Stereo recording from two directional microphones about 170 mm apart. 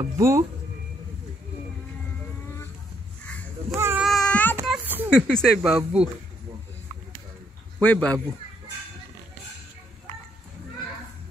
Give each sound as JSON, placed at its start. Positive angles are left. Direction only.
{"t": 0.0, "sound": "speech", "side_deg": -15}
{"t": 3.7, "sound": "baby cry", "side_deg": -15}
{"t": 4.0, "sound": "a sound", "side_deg": 5}
{"t": 4.6, "sound": "a sound", "side_deg": -10}
{"t": 5.3, "sound": "speech", "side_deg": 0}
{"t": 7.8, "sound": "speech", "side_deg": 10}